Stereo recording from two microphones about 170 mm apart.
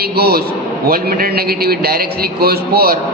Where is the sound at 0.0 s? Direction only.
65° right (ahead or behind).